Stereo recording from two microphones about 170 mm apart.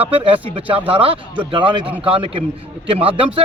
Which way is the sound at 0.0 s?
30° right (ahead or behind).